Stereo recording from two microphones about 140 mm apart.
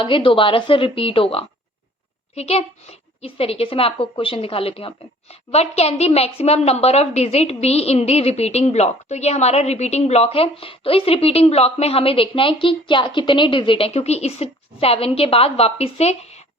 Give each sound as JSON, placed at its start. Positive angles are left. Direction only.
{"t": 0.0, "sound": "a woman's voice", "side_deg": 40}